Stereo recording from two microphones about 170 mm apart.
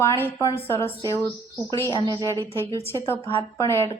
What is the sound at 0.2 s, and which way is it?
A woman's voice, 15° left (ahead or behind).